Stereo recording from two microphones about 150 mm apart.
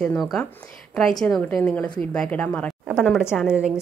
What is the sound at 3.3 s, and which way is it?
Speech, 5° right (ahead or behind).